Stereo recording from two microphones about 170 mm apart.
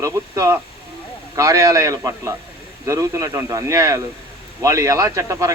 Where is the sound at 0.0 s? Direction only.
20° right (ahead or behind).